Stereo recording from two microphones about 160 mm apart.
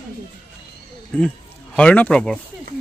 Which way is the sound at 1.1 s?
10° left (ahead or behind).